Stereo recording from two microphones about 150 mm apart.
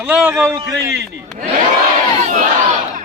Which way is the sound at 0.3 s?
15° right (ahead or behind).